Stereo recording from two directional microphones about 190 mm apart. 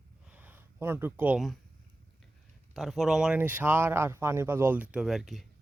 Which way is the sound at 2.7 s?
Centre (ahead or behind).